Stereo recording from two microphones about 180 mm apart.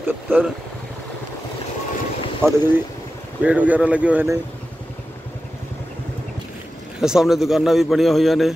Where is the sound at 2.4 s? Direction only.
15° right (ahead or behind).